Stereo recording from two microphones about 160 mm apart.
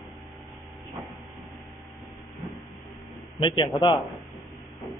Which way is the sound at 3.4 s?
30° left (ahead or behind).